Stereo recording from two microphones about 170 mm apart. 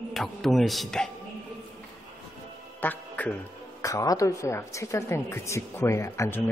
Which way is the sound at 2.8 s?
10° left (ahead or behind).